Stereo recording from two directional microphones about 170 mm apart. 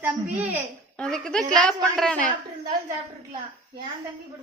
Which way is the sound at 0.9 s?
5° left (ahead or behind).